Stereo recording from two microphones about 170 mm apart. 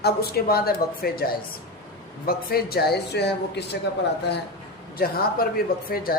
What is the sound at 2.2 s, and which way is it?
Speech, 65° left (ahead or behind).